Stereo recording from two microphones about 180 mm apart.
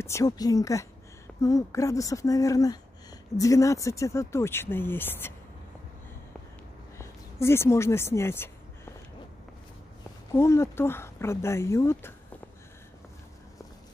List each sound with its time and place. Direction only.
0.0 s speech: 15° left (ahead or behind)
7.0 s a sound: 15° left (ahead or behind)
10.3 s speech: 15° left (ahead or behind)